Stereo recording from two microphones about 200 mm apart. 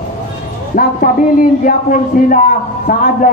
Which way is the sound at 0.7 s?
45° left (ahead or behind).